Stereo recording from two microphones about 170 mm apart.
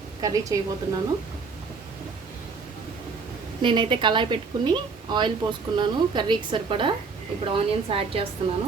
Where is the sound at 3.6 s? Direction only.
30° right (ahead or behind).